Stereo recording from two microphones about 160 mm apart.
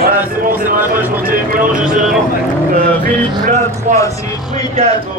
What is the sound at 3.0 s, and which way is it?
Vehicle, 50° right (ahead or behind).